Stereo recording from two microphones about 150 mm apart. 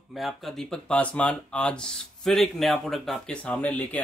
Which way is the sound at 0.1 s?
Centre (ahead or behind).